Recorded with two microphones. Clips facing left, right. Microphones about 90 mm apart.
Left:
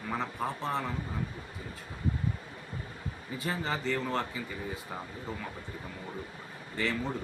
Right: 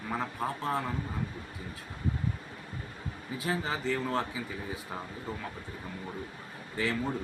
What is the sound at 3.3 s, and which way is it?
Speech, 5° right (ahead or behind).